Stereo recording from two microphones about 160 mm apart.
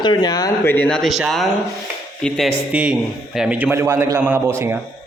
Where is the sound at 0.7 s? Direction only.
5° left (ahead or behind); by 4.4 s 15° right (ahead or behind).